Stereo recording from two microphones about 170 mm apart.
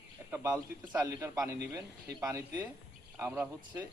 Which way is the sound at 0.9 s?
20° right (ahead or behind).